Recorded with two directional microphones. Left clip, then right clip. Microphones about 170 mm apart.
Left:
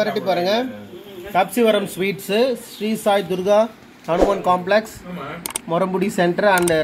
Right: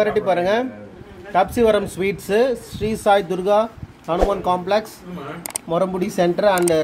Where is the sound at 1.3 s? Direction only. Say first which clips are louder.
Right 1 dB; 15° right (ahead or behind).